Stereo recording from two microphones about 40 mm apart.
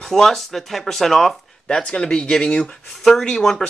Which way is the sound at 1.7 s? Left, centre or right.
Left.